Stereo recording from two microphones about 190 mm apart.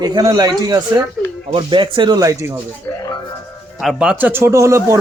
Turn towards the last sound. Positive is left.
turn(degrees=-15)  # may be behind; listen again after turning